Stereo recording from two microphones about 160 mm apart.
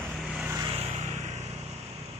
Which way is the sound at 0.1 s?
5° right (ahead or behind).